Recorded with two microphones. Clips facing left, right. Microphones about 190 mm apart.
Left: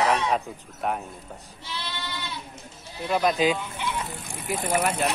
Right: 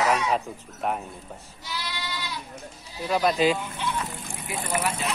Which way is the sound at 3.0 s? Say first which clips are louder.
Even; centre (ahead or behind).